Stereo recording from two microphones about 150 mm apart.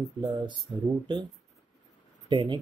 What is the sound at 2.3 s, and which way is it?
Speech, 35° right (ahead or behind).